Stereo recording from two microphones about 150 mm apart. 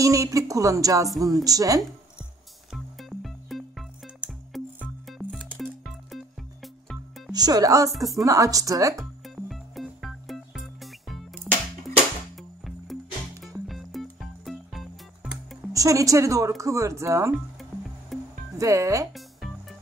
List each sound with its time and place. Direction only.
0.0 s speech: 20° right (ahead or behind)
2.7 s music: centre (ahead or behind)
7.3 s speech: 25° right (ahead or behind)
7.9 s a woman's voice: centre (ahead or behind)
8.3 s speech: 20° right (ahead or behind)
9.2 s music: centre (ahead or behind)
15.7 s speech: 20° right (ahead or behind)
18.1 s music: centre (ahead or behind)
18.6 s speech: 20° right (ahead or behind)
19.1 s music: centre (ahead or behind)